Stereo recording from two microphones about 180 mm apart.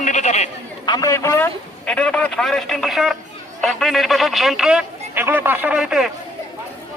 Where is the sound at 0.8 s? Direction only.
20° left (ahead or behind).